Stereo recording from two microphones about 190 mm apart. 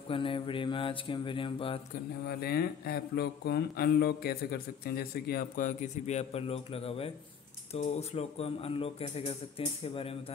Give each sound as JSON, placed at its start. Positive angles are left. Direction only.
{"t": 0.1, "sound": "speech", "side_deg": 25}
{"t": 2.2, "sound": "speech", "side_deg": 55}